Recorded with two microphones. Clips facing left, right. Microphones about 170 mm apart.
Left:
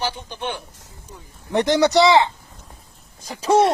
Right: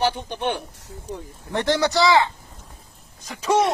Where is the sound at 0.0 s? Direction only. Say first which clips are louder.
Right 4 dB; 60° right (ahead or behind).